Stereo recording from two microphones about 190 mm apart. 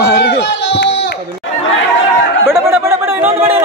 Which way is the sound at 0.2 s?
65° left (ahead or behind).